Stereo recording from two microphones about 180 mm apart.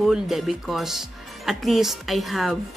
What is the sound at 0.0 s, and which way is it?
Speech, centre (ahead or behind).